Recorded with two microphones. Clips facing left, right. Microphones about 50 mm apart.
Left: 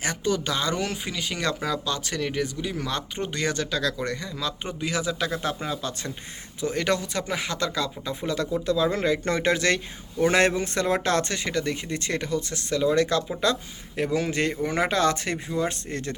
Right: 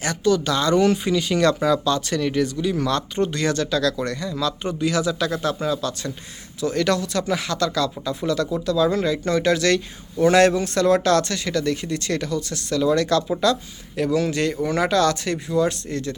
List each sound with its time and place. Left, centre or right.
0.0 s speech: centre